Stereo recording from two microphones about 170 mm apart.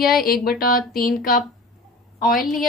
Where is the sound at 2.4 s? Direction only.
Centre (ahead or behind).